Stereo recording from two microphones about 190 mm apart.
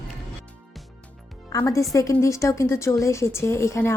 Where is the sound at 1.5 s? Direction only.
15° left (ahead or behind).